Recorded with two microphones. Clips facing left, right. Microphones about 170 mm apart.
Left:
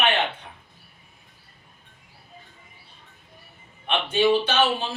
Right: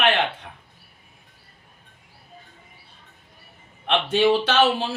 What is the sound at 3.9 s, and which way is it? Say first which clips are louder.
Speech: right 3 dB; 90° right.